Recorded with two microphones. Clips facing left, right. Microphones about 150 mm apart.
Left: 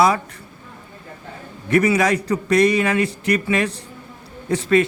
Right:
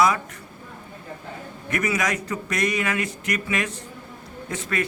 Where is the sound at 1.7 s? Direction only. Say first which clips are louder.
Left 8 dB; 30° left (ahead or behind).